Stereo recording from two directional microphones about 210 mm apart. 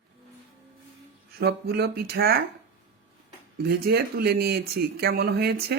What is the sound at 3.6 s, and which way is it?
Speech, 45° right (ahead or behind).